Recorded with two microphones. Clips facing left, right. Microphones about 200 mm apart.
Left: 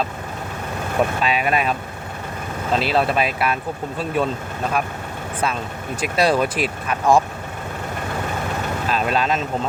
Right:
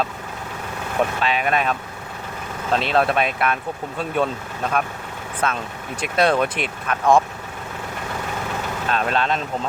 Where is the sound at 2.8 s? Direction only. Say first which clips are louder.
Even; centre (ahead or behind).